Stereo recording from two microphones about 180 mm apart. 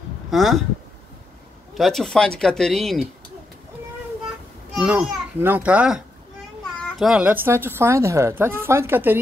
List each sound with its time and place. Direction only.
0.3 s speech: centre (ahead or behind)
1.8 s speech: centre (ahead or behind)
4.7 s a woman's voice: 5° right (ahead or behind)